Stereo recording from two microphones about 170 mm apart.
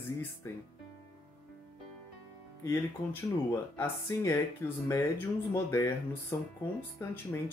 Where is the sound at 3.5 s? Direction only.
15° left (ahead or behind).